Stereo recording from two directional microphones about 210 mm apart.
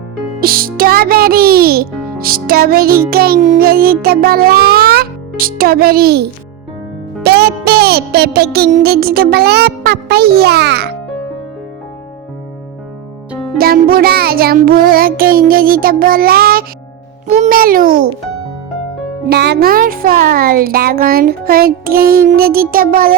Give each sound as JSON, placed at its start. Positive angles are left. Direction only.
{"t": 0.3, "sound": "a child's voice", "side_deg": -45}
{"t": 7.2, "sound": "music", "side_deg": -50}
{"t": 13.6, "sound": "a child's voice", "side_deg": -45}
{"t": 19.3, "sound": "a child's voice", "side_deg": -50}